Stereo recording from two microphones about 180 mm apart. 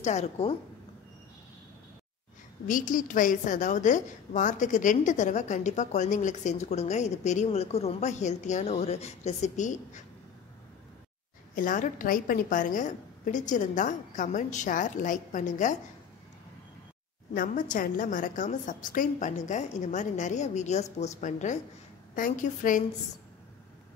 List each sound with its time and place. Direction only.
0.0 s a woman's voice: 40° left (ahead or behind)
2.6 s a woman's voice: 45° left (ahead or behind)
11.5 s a woman's voice: 50° left (ahead or behind)
17.3 s a woman's voice: 50° left (ahead or behind)